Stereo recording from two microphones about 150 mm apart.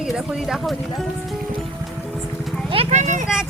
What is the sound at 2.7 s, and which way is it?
Speech, 45° right (ahead or behind).